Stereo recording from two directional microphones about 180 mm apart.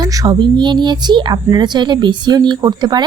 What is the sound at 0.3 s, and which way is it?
A woman's voice, 25° right (ahead or behind).